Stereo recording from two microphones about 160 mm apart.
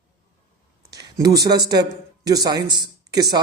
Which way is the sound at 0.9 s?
20° right (ahead or behind).